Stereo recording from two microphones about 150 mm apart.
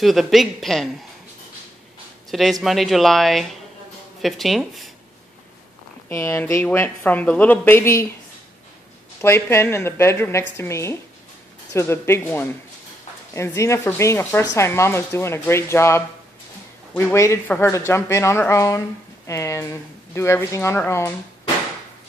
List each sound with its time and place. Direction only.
0.0 s speech: centre (ahead or behind)
2.6 s speech: centre (ahead or behind)
6.0 s speech: 20° left (ahead or behind)
9.2 s speech: 15° left (ahead or behind)